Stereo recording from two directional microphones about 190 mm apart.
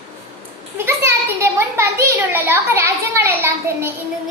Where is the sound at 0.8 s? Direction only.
10° right (ahead or behind).